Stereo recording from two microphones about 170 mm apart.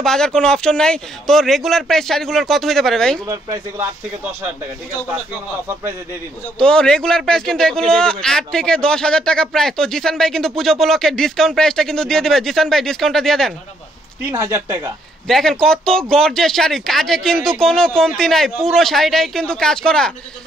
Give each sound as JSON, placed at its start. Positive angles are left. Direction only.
{"t": 0.0, "sound": "speech", "side_deg": 5}
{"t": 3.3, "sound": "speech", "side_deg": -20}
{"t": 6.6, "sound": "speech", "side_deg": 5}
{"t": 14.3, "sound": "speech", "side_deg": -15}
{"t": 15.2, "sound": "speech", "side_deg": 0}